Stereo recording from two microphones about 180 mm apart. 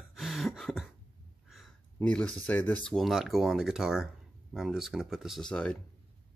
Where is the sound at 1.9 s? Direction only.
5° left (ahead or behind).